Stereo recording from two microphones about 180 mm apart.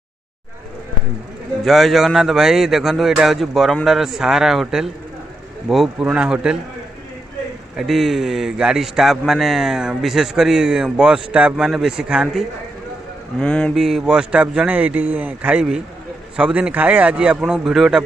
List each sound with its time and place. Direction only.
1.6 s a man's voice: centre (ahead or behind)
7.7 s a man's voice: centre (ahead or behind)
13.4 s a man's voice: 5° left (ahead or behind)